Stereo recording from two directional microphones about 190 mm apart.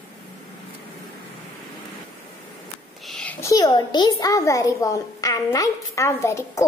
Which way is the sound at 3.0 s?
Centre (ahead or behind).